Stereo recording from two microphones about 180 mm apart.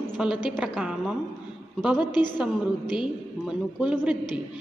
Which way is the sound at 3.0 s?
5° right (ahead or behind).